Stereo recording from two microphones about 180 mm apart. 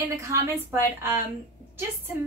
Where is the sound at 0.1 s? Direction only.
15° right (ahead or behind).